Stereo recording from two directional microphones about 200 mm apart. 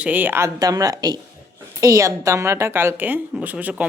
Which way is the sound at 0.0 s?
10° right (ahead or behind).